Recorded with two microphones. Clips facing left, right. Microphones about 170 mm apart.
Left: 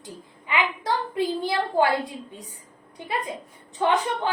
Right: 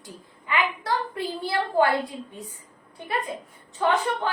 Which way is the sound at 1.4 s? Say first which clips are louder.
Right 3 dB; 20° left (ahead or behind).